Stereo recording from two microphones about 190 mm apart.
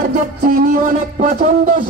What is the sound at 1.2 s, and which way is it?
Speech, 45° right (ahead or behind).